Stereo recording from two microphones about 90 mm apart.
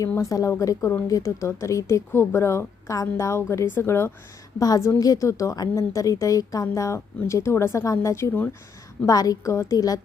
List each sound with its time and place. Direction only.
0.2 s a woman's voice: 35° left (ahead or behind)